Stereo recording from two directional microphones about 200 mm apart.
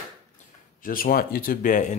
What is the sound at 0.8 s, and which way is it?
Speech, 45° left (ahead or behind).